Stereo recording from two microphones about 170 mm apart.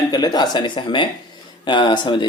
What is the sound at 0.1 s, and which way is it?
Speech, 25° left (ahead or behind).